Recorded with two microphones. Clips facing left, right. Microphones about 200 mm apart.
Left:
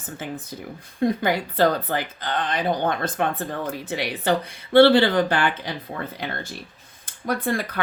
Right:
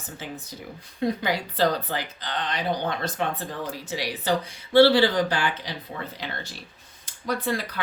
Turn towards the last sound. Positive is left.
turn(degrees=55)  # may be behind; listen again after turning